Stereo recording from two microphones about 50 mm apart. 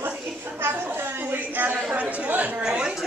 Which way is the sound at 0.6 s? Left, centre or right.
Right.